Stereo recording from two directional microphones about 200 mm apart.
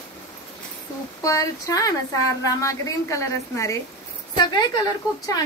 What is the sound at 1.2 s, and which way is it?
A woman's voice, 15° left (ahead or behind).